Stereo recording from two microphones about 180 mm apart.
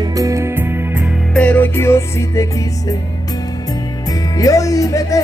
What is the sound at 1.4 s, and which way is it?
Music, 10° left (ahead or behind).